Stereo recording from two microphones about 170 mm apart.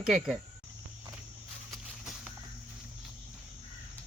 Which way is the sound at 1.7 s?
Centre (ahead or behind).